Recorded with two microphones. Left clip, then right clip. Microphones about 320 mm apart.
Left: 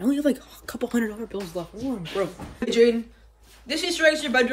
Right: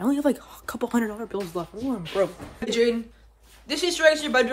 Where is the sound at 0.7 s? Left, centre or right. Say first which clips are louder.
Even; centre.